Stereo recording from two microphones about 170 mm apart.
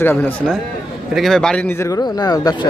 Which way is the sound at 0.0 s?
15° left (ahead or behind).